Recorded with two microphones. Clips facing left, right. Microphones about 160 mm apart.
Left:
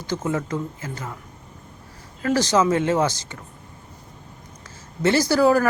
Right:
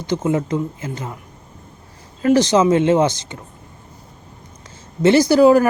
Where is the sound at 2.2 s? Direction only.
20° right (ahead or behind).